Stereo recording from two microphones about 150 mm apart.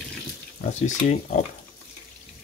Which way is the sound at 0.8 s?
55° left (ahead or behind).